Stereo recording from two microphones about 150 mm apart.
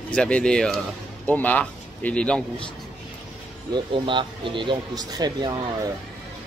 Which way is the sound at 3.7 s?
35° right (ahead or behind).